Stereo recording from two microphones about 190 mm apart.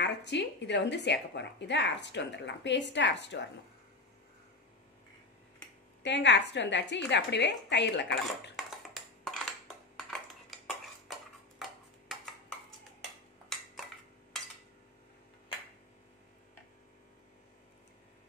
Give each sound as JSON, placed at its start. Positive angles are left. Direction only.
{"t": 0.0, "sound": "a woman's voice", "side_deg": 65}
{"t": 6.0, "sound": "a woman's voice", "side_deg": 65}
{"t": 8.5, "sound": "cutlery", "side_deg": 0}
{"t": 11.1, "sound": "tick-tock", "side_deg": 0}